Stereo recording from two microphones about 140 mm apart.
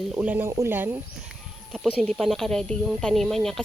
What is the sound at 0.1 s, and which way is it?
Speech, 10° right (ahead or behind).